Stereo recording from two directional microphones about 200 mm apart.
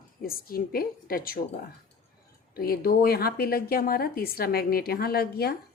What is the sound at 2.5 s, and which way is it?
A woman's voice, 50° left (ahead or behind).